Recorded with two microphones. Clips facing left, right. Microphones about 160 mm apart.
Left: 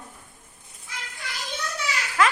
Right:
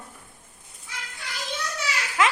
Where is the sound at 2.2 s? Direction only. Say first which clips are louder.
Left 1 dB; 20° right (ahead or behind).